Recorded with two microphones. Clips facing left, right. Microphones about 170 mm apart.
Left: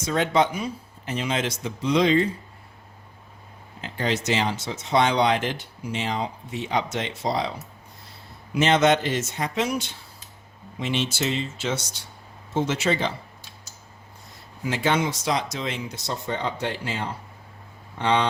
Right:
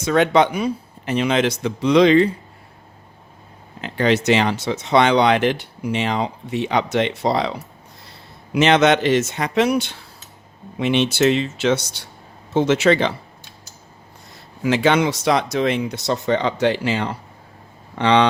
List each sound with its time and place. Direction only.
0.0 s speech: 70° right (ahead or behind)
3.8 s speech: 70° right (ahead or behind)
14.6 s speech: 85° right
17.9 s a sound: 90° right